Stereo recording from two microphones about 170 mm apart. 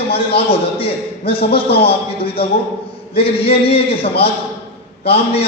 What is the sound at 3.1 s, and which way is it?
A man's voice, 35° left (ahead or behind).